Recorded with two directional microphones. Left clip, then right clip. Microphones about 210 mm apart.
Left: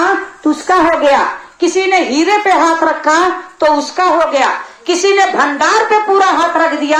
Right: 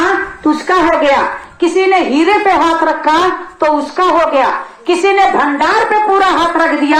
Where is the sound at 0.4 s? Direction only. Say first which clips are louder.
Left 1 dB; 45° left (ahead or behind).